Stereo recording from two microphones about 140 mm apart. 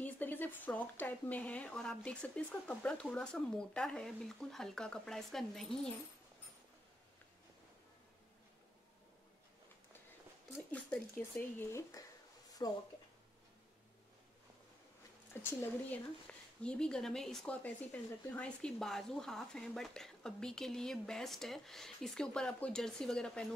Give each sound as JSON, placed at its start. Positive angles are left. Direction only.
{"t": 0.0, "sound": "speech", "side_deg": 15}
{"t": 10.7, "sound": "speech", "side_deg": 10}
{"t": 12.6, "sound": "speech", "side_deg": 30}
{"t": 15.6, "sound": "speech", "side_deg": 10}